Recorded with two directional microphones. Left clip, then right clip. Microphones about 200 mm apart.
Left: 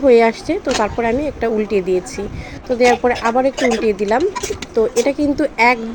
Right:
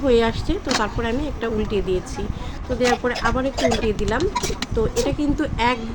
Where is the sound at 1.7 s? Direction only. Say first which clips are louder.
Left 6 dB; 55° left (ahead or behind).